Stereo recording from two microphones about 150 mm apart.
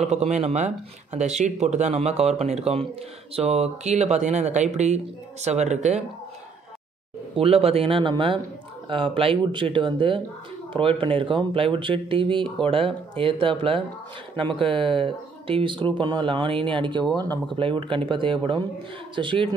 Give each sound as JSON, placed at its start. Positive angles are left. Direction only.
{"t": 0.0, "sound": "speech", "side_deg": -50}
{"t": 7.3, "sound": "speech", "side_deg": -40}